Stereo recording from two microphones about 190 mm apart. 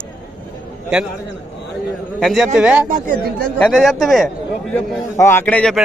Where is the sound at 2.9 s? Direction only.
45° right (ahead or behind).